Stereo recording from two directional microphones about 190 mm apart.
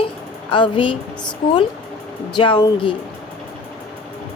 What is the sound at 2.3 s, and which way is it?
Speech, 25° left (ahead or behind).